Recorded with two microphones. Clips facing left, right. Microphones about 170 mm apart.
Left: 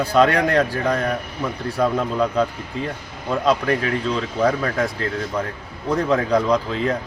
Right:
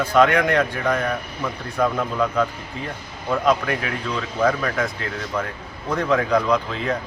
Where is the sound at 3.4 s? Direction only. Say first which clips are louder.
Left 2 dB; 30° left (ahead or behind).